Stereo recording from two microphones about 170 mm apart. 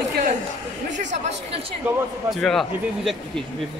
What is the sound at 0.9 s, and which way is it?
Speech, 45° right (ahead or behind).